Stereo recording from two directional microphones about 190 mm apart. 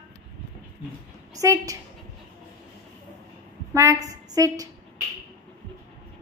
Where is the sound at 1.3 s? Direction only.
15° right (ahead or behind).